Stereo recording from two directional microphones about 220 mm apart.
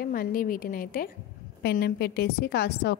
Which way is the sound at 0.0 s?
40° left (ahead or behind).